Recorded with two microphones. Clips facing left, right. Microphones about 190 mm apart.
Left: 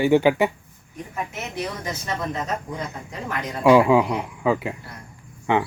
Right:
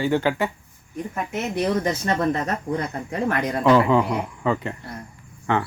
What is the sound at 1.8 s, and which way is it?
Speech, 65° right (ahead or behind).